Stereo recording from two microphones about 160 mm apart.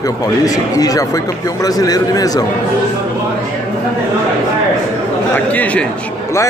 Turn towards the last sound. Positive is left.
turn(degrees=10)  # may be behind; listen again after turning